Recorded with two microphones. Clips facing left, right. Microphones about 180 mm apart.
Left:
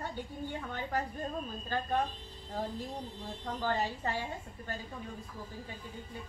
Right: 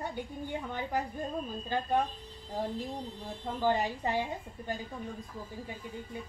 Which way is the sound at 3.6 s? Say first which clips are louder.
Right 4 dB; 15° right (ahead or behind).